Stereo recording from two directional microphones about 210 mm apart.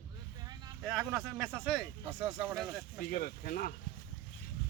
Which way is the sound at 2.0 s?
10° right (ahead or behind).